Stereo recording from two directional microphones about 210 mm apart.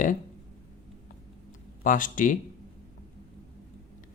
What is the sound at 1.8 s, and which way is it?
Speech, 40° left (ahead or behind).